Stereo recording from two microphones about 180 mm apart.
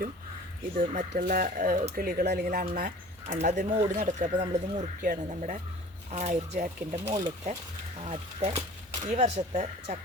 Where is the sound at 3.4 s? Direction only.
40° right (ahead or behind).